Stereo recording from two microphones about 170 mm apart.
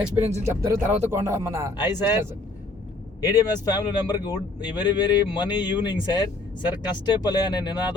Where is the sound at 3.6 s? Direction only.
25° left (ahead or behind).